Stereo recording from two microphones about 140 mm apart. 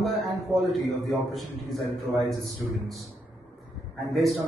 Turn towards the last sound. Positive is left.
turn(degrees=0)  # may be behind; listen again after turning